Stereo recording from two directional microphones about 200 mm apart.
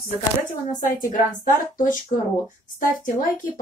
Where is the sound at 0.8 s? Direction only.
40° left (ahead or behind).